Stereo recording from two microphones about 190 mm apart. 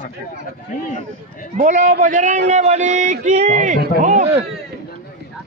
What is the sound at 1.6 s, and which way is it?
A man's voice, 40° right (ahead or behind).